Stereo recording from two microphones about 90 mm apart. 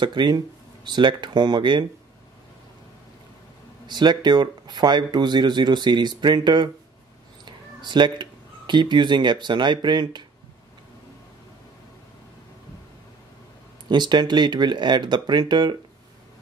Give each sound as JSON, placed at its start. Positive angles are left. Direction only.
{"t": 0.0, "sound": "speech", "side_deg": -55}
{"t": 3.8, "sound": "speech", "side_deg": -55}
{"t": 13.8, "sound": "speech", "side_deg": -55}